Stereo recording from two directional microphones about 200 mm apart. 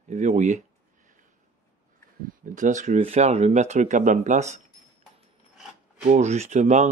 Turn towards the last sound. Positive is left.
turn(degrees=-35)  # may be behind; listen again after turning